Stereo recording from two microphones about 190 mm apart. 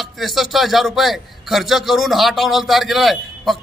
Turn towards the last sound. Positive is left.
turn(degrees=0)  # may be behind; listen again after turning